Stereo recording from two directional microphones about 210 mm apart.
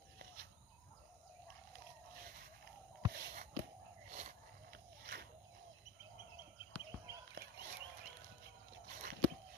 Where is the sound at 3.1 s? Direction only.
45° right (ahead or behind).